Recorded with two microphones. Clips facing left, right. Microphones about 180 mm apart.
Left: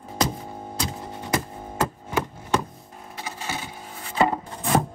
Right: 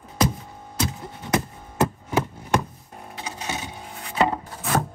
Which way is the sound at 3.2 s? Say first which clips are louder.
Right 1 dB; 20° right (ahead or behind).